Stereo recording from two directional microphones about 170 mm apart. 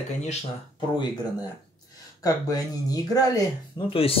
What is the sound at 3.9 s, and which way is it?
Speech, 35° left (ahead or behind).